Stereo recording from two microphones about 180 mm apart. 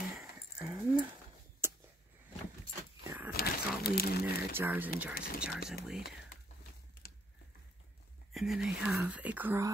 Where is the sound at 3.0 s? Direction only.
15° right (ahead or behind).